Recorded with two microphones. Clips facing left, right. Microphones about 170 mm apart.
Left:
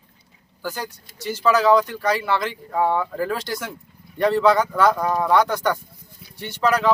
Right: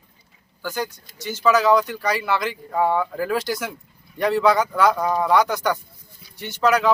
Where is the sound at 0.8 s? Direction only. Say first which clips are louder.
Left 3 dB; 35° left (ahead or behind).